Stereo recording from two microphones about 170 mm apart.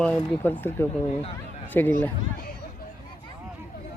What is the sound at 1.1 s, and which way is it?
Speech, 35° left (ahead or behind).